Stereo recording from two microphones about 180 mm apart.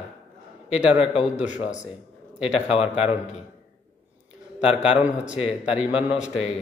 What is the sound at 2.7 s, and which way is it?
Speech, 35° left (ahead or behind).